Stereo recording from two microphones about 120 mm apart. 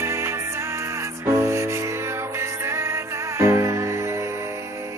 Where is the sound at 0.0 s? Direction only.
20° right (ahead or behind).